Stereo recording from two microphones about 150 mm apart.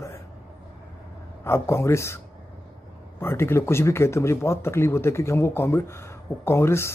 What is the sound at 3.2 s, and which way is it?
Speech, 15° left (ahead or behind).